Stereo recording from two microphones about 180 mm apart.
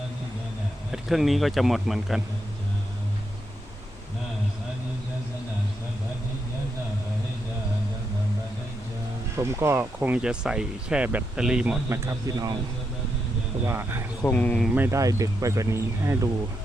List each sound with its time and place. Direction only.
0.9 s speech: centre (ahead or behind)
9.3 s speech: 15° right (ahead or behind)
13.7 s speech: 15° right (ahead or behind)
14.3 s speech: 5° left (ahead or behind)
14.8 s speech: 15° right (ahead or behind)